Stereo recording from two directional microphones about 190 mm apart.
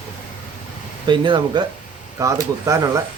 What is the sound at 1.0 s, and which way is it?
Speech, 25° right (ahead or behind).